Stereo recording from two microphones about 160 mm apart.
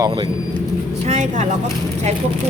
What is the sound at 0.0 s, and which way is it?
Speech, 30° right (ahead or behind).